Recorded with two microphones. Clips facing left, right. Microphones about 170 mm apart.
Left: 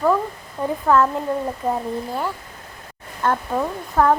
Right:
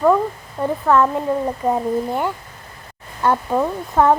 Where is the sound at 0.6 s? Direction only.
5° right (ahead or behind).